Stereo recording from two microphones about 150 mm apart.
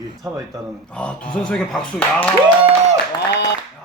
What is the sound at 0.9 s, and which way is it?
Speech, 5° left (ahead or behind).